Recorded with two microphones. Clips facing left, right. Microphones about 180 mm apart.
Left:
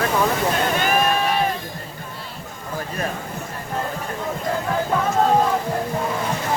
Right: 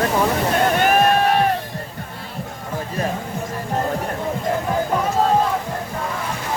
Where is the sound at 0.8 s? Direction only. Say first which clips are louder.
Right 5 dB; 60° right (ahead or behind).